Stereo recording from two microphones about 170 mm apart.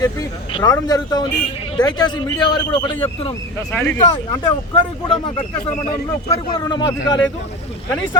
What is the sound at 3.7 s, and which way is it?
Speech, 10° left (ahead or behind).